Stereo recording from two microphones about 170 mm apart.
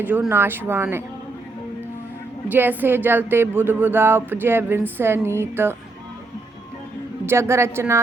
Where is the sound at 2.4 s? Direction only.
10° right (ahead or behind).